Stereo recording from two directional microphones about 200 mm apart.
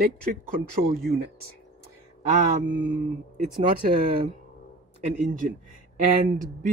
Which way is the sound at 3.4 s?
40° right (ahead or behind).